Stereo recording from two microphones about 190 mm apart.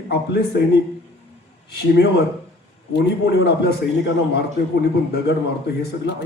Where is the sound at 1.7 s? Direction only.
60° left (ahead or behind).